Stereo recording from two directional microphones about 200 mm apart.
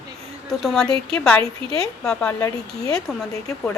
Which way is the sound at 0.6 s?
Centre (ahead or behind).